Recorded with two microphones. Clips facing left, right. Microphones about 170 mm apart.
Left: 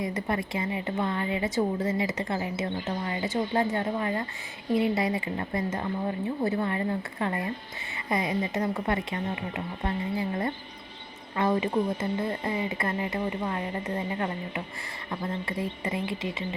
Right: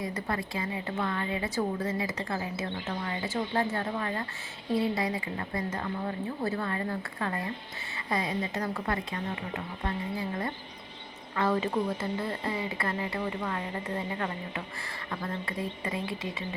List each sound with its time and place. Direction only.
0.0 s a woman's voice: 20° left (ahead or behind)